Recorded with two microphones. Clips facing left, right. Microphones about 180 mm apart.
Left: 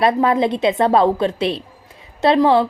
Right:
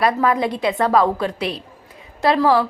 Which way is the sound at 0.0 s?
25° left (ahead or behind).